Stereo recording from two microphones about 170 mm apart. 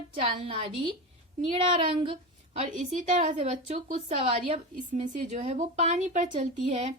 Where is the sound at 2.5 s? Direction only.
45° right (ahead or behind).